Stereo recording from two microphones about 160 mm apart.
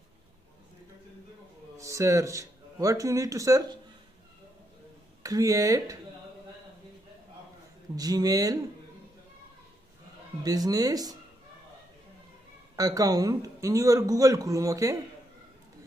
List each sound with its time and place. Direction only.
1.8 s speech: 20° right (ahead or behind)
5.2 s a man's voice: 20° right (ahead or behind)
7.9 s a man's voice: 25° right (ahead or behind)
10.4 s a man's voice: 25° right (ahead or behind)
12.7 s a man's voice: 20° right (ahead or behind)